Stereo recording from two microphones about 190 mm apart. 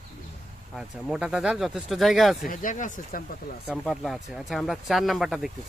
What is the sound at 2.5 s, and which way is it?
Speech, 40° left (ahead or behind).